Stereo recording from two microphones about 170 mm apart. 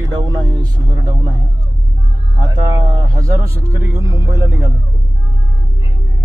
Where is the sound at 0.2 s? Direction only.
25° right (ahead or behind).